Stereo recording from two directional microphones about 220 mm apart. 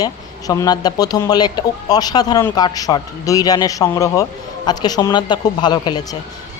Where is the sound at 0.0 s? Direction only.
15° left (ahead or behind).